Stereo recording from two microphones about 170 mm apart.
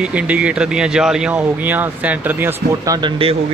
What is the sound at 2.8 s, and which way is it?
Speech, 20° right (ahead or behind).